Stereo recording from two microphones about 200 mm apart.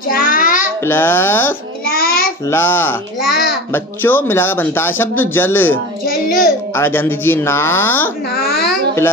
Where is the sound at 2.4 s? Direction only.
10° left (ahead or behind).